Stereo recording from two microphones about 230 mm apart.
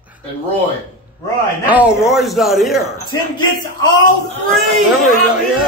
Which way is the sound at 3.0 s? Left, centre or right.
Centre.